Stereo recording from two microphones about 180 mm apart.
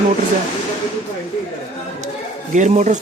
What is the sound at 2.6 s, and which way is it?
Speech, 40° right (ahead or behind).